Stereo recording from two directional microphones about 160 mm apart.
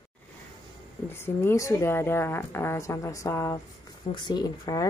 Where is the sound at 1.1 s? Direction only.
15° left (ahead or behind).